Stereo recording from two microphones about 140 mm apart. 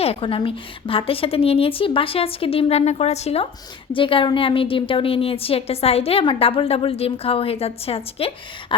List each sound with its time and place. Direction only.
0.0 s a woman's voice: 45° left (ahead or behind)